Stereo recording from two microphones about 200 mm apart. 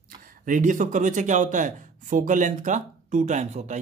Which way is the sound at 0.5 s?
40° right (ahead or behind).